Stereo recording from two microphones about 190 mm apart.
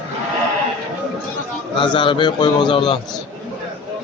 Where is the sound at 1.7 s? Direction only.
25° left (ahead or behind).